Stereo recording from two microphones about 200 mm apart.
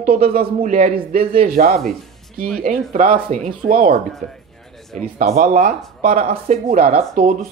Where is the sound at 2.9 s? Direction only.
40° right (ahead or behind).